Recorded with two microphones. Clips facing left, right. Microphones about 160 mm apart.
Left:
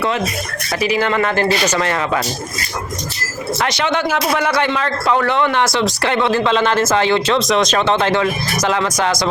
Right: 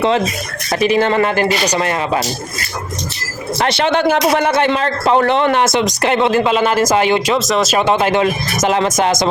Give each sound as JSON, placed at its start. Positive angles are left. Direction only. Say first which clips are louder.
{"t": 0.9, "sound": "speech", "louder": "right 3 dB", "side_deg": -30}
{"t": 1.4, "sound": "speech", "louder": "right 1 dB", "side_deg": -15}
{"t": 3.6, "sound": "speech", "louder": "right 4 dB", "side_deg": -30}
{"t": 3.9, "sound": "speech", "louder": "right 6 dB", "side_deg": -60}
{"t": 4.4, "sound": "a man's voice", "louder": "right 3 dB", "side_deg": -30}
{"t": 7.3, "sound": "speech", "louder": "even", "side_deg": 0}